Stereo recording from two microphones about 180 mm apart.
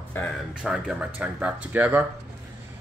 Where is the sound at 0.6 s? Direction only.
5° right (ahead or behind).